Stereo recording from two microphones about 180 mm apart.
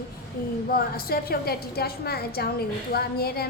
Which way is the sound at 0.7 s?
55° left (ahead or behind).